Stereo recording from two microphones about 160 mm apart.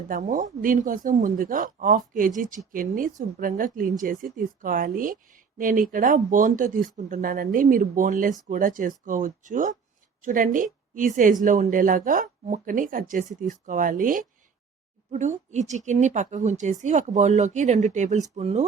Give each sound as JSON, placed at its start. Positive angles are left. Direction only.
{"t": 0.1, "sound": "a woman's voice", "side_deg": -55}